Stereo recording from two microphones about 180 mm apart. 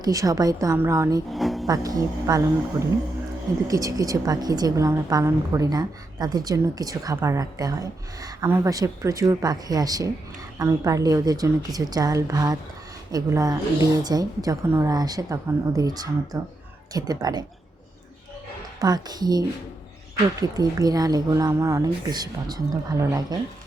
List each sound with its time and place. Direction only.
0.0 s a woman's voice: 20° right (ahead or behind)
1.3 s music: centre (ahead or behind)
1.6 s a woman's voice: 20° right (ahead or behind)
3.7 s a woman's voice: 20° right (ahead or behind)
18.8 s a woman's voice: 20° right (ahead or behind)
20.6 s a woman's voice: 20° right (ahead or behind)